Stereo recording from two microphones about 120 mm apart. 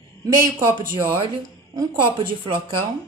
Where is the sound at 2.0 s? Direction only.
45° right (ahead or behind).